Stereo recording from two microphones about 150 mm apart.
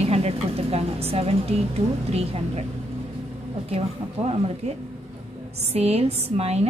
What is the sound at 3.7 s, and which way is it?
A woman's voice, 40° right (ahead or behind).